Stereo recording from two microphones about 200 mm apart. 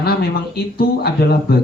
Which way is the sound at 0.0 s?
50° left (ahead or behind).